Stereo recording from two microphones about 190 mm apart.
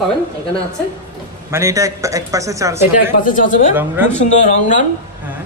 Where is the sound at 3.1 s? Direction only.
45° left (ahead or behind).